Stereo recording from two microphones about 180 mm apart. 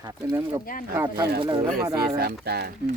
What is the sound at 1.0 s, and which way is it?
Speech, 10° right (ahead or behind).